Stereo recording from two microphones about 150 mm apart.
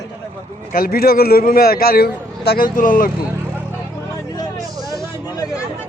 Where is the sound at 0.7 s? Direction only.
85° left.